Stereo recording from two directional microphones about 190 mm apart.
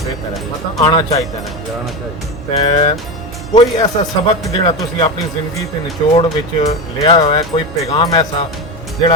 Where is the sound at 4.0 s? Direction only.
30° left (ahead or behind).